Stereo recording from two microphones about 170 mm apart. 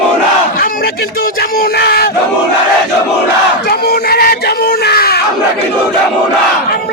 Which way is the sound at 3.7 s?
65° left (ahead or behind).